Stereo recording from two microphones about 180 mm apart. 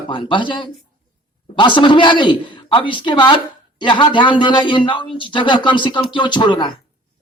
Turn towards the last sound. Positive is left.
turn(degrees=25)  # may be behind; listen again after turning